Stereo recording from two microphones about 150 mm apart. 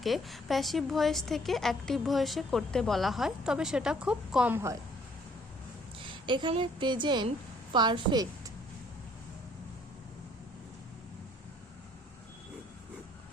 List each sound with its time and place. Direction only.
0.0 s a woman's voice: centre (ahead or behind); by 4.8 s 15° right (ahead or behind)
6.0 s a woman's voice: 35° right (ahead or behind)